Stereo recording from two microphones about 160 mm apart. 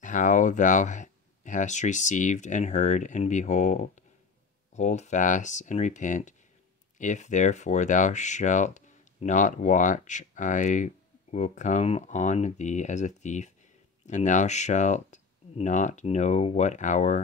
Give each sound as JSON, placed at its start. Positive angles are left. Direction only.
{"t": 0.0, "sound": "speech", "side_deg": 55}